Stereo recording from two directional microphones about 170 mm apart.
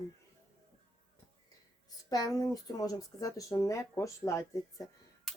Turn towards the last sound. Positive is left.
turn(degrees=20)  # may be behind; listen again after turning